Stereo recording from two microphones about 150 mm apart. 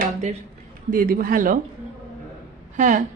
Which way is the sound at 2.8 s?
55° right (ahead or behind).